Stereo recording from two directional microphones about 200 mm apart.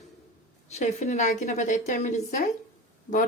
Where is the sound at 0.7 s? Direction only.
35° left (ahead or behind).